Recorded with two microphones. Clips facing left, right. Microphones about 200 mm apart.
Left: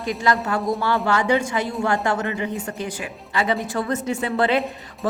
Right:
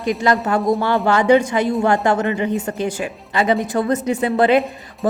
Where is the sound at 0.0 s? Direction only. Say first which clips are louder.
Right 4 dB; 20° right (ahead or behind).